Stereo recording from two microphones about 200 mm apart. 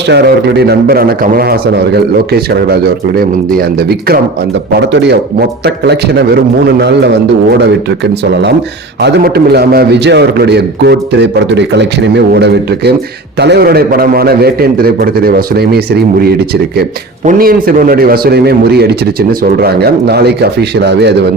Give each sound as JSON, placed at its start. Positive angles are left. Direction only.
{"t": 0.1, "sound": "a man's voice", "side_deg": -55}